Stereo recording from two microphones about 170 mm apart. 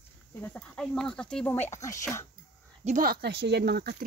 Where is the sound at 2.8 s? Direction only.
55° right (ahead or behind).